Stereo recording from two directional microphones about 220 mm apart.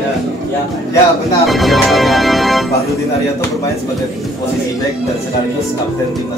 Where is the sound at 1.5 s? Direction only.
Centre (ahead or behind).